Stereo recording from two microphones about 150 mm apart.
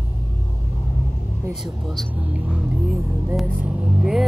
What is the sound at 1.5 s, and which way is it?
Speech, centre (ahead or behind).